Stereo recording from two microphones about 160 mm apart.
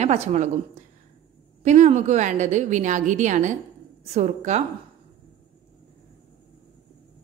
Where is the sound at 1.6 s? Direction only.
45° right (ahead or behind).